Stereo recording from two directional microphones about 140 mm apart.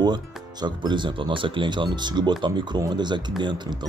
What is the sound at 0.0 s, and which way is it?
Speech, 30° right (ahead or behind).